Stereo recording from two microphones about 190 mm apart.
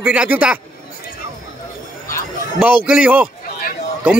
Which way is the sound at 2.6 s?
5° right (ahead or behind).